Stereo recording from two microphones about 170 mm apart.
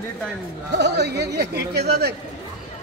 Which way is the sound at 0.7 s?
85° right.